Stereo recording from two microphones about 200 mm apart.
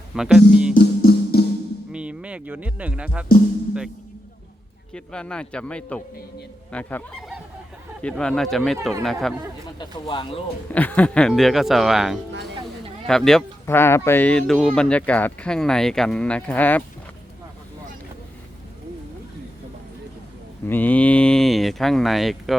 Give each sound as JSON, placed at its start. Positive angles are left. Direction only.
{"t": 0.1, "sound": "speech", "side_deg": -5}
{"t": 0.7, "sound": "music", "side_deg": 50}
{"t": 1.9, "sound": "speech", "side_deg": -5}
{"t": 4.9, "sound": "speech", "side_deg": 5}
{"t": 9.7, "sound": "speech", "side_deg": 25}
{"t": 10.7, "sound": "speech", "side_deg": 10}
{"t": 20.7, "sound": "speech", "side_deg": 10}